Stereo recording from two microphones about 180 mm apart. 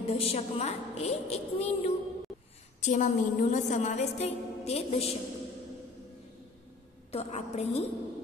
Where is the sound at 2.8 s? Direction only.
45° left (ahead or behind).